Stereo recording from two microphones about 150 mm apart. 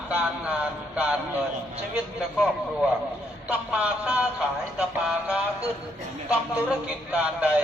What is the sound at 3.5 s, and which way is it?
Music, 10° right (ahead or behind).